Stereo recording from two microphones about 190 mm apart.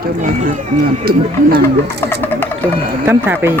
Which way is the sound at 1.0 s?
50° right (ahead or behind).